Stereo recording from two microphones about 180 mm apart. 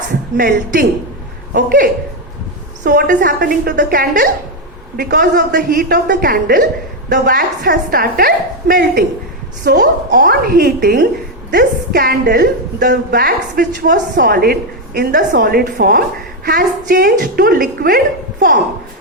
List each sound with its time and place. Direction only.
0.3 s a woman's voice: 55° right (ahead or behind)